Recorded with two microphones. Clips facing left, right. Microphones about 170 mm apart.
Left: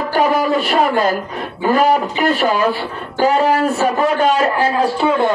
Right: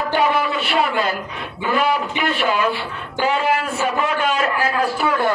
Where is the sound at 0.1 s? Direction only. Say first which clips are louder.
Left 5 dB; 40° left (ahead or behind).